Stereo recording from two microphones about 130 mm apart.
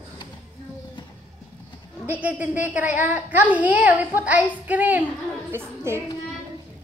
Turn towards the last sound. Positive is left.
turn(degrees=-20)  # may be behind; listen again after turning